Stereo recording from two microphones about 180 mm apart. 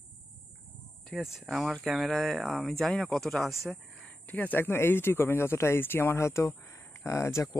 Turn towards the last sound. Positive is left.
turn(degrees=15)  # may be behind; listen again after turning